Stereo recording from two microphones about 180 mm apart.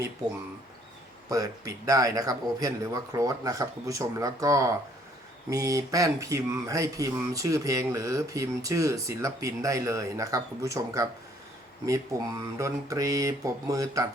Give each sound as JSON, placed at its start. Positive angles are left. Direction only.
{"t": 1.3, "sound": "a man's voice", "side_deg": -20}
{"t": 12.5, "sound": "a man's voice", "side_deg": -20}